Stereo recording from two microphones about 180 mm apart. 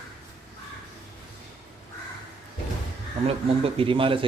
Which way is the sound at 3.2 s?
30° right (ahead or behind).